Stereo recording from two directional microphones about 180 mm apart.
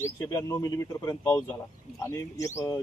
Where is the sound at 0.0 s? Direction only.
15° left (ahead or behind).